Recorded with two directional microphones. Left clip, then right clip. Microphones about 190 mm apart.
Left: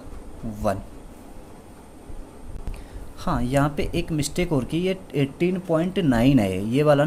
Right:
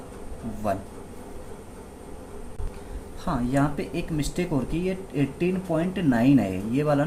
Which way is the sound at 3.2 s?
50° left (ahead or behind).